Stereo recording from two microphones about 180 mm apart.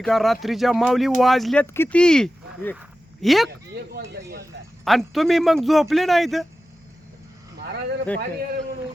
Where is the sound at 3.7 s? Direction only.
60° right (ahead or behind).